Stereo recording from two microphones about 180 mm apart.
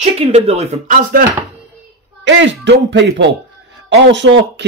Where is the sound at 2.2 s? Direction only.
75° right (ahead or behind).